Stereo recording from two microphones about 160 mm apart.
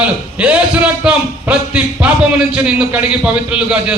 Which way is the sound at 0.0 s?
5° right (ahead or behind).